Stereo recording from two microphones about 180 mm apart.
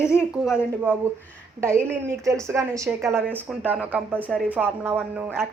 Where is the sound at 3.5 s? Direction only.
5° right (ahead or behind).